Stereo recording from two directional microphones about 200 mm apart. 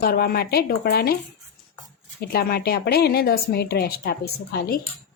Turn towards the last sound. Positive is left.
turn(degrees=55)  # may be behind; listen again after turning